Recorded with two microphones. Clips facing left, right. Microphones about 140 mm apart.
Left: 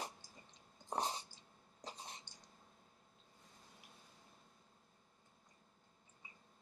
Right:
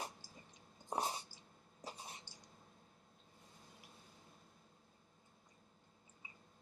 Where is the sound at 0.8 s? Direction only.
10° right (ahead or behind).